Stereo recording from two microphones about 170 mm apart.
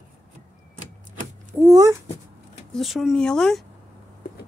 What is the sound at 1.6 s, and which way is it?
Speech, 20° right (ahead or behind).